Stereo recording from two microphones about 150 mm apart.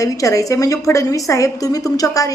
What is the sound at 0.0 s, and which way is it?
A woman's voice, 20° left (ahead or behind).